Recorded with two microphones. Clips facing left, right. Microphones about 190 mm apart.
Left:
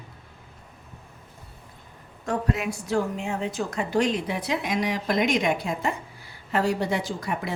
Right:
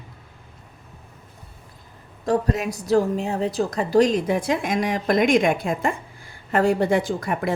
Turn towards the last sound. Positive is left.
turn(degrees=-55)  # may be behind; listen again after turning